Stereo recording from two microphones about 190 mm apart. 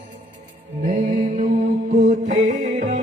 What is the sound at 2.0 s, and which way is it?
Music, 40° right (ahead or behind).